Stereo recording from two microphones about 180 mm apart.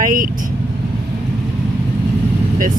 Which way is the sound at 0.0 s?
50° right (ahead or behind).